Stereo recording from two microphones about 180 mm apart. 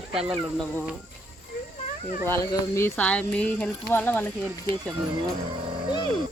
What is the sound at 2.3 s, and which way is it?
Speech, 15° left (ahead or behind).